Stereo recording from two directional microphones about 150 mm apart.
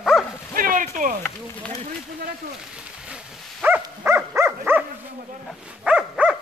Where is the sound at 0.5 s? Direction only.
65° right (ahead or behind).